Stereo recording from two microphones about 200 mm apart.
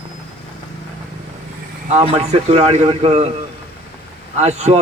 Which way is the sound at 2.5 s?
30° right (ahead or behind).